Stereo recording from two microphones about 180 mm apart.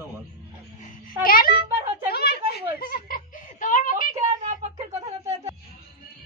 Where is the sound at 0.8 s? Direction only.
50° left (ahead or behind).